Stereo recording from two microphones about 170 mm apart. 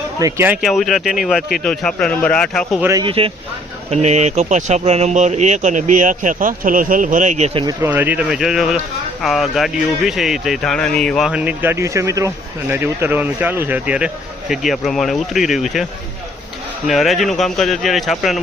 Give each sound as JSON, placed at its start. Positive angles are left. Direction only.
{"t": 0.2, "sound": "speech", "side_deg": -15}
{"t": 3.0, "sound": "speech", "side_deg": -30}
{"t": 7.6, "sound": "speech", "side_deg": -20}
{"t": 7.9, "sound": "a man's voice", "side_deg": -10}
{"t": 11.3, "sound": "a man's voice", "side_deg": -10}